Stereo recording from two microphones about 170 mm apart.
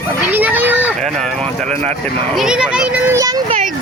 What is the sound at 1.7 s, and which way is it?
Speech, 40° right (ahead or behind).